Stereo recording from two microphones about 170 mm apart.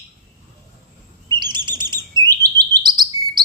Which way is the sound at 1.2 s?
25° right (ahead or behind).